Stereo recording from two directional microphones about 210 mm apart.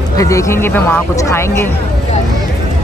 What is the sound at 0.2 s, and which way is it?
Speech, 15° left (ahead or behind).